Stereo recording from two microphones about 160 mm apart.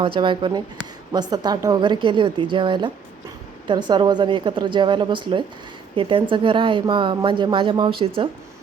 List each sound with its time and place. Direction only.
0.0 s a woman's voice: 30° right (ahead or behind)